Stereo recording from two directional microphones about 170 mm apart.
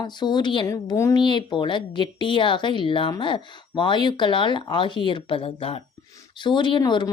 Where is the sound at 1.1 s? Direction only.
25° left (ahead or behind).